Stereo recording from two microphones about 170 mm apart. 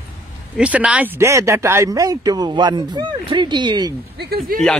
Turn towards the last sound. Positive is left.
turn(degrees=-65)  # may be behind; listen again after turning